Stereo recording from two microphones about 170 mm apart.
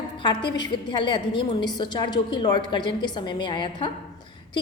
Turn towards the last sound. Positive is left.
turn(degrees=30)  # may be behind; listen again after turning